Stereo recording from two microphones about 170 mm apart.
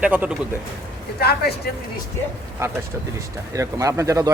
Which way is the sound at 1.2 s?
70° left (ahead or behind).